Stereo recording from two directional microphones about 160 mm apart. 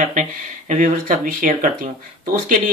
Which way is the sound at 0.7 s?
60° right (ahead or behind).